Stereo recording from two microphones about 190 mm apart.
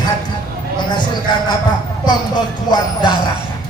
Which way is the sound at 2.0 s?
25° left (ahead or behind).